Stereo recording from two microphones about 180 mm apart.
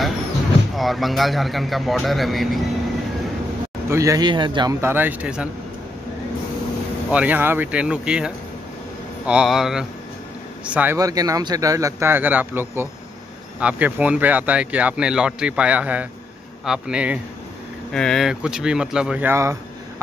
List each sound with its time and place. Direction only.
0.7 s a man's voice: centre (ahead or behind)
3.9 s a man's voice: 20° right (ahead or behind)
4.8 s speech: 10° right (ahead or behind)
7.1 s a man's voice: 10° right (ahead or behind)
11.0 s a man's voice: 20° right (ahead or behind)